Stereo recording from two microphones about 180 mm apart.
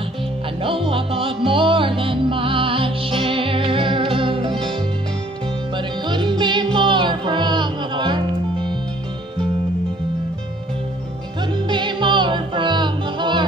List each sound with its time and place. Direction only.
0.6 s music: 30° right (ahead or behind)
5.8 s music: 25° right (ahead or behind)
11.7 s music: 25° right (ahead or behind)